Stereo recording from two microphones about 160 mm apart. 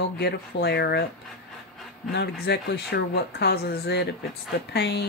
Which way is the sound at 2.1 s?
90° left.